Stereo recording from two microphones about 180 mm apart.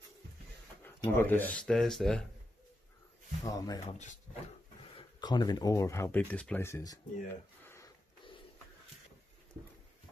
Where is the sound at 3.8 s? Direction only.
45° left (ahead or behind).